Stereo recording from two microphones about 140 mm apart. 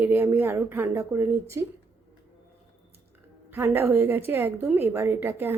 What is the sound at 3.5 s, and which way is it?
A woman's voice, 15° right (ahead or behind).